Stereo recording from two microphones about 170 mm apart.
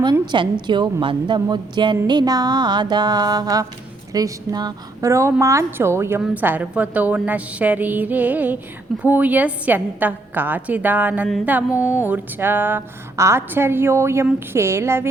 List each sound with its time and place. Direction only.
0.0 s a woman's voice: 25° right (ahead or behind)
0.7 s mantra: 30° right (ahead or behind)
4.1 s a woman's voice: 25° right (ahead or behind)